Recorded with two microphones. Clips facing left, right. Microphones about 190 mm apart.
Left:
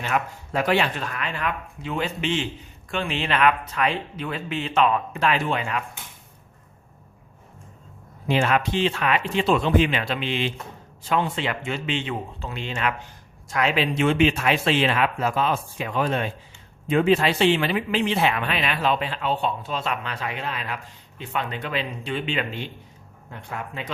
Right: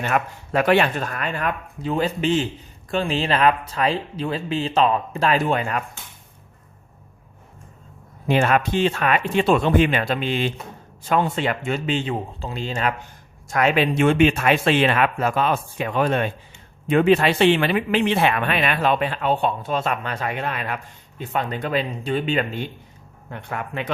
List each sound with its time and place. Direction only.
0.0 s speech: 60° right (ahead or behind); by 5.8 s 45° right (ahead or behind)
8.3 s speech: 50° right (ahead or behind)
13.5 s speech: 50° right (ahead or behind)
21.2 s speech: 45° right (ahead or behind)
23.3 s speech: 60° right (ahead or behind)